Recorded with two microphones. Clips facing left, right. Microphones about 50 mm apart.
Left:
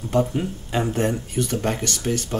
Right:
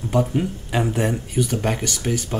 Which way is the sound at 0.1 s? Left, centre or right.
Centre.